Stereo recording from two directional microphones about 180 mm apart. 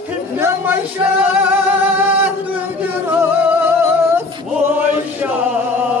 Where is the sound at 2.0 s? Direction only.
10° right (ahead or behind).